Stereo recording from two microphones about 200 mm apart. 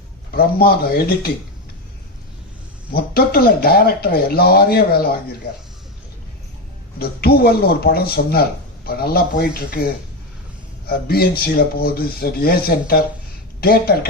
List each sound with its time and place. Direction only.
0.3 s speech: 50° left (ahead or behind)
2.9 s speech: 50° left (ahead or behind)
7.0 s speech: 50° left (ahead or behind)